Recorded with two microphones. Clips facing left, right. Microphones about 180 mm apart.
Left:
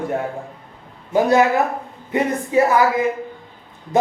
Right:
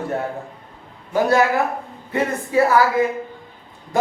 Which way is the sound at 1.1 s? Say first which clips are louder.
Left 2 dB; 20° left (ahead or behind).